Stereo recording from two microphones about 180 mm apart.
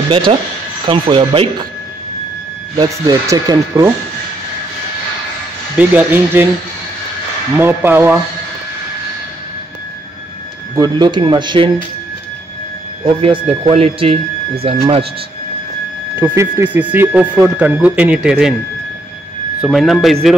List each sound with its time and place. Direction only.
0.1 s speech: 30° right (ahead or behind)
2.8 s speech: 20° right (ahead or behind)
5.8 s speech: 10° right (ahead or behind)
7.5 s speech: 10° right (ahead or behind)
10.8 s speech: 25° right (ahead or behind)
13.5 s speech: 35° right (ahead or behind)
16.2 s speech: 15° right (ahead or behind)
19.6 s speech: centre (ahead or behind)